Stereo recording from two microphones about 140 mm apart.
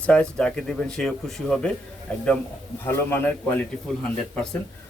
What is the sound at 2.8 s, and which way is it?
Speech, 15° left (ahead or behind).